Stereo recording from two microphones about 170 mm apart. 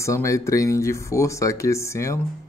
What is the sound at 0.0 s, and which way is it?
Speech, 15° left (ahead or behind).